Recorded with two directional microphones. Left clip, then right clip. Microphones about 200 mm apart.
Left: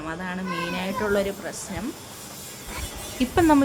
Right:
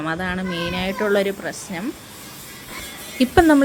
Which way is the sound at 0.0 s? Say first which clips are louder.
Right 7 dB; 20° right (ahead or behind).